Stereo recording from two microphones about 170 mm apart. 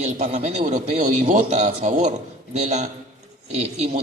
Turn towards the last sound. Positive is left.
turn(degrees=-40)  # may be behind; listen again after turning